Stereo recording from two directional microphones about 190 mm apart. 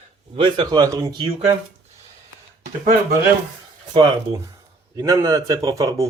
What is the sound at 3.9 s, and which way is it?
Speech, 25° right (ahead or behind).